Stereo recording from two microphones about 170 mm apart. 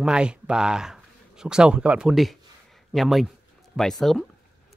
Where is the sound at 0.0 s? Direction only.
5° right (ahead or behind).